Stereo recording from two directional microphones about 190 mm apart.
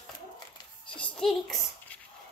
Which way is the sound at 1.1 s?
Centre (ahead or behind).